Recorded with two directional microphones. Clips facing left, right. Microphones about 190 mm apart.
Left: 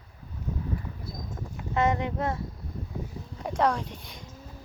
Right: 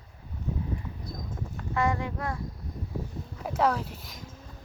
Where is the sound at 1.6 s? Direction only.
20° left (ahead or behind).